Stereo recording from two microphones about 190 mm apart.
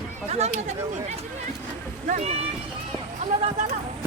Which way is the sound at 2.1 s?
40° right (ahead or behind).